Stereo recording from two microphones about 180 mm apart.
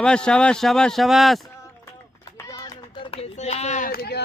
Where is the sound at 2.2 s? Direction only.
20° left (ahead or behind).